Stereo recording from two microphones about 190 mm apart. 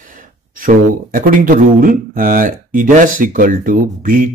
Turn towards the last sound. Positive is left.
turn(degrees=-45)  # may be behind; listen again after turning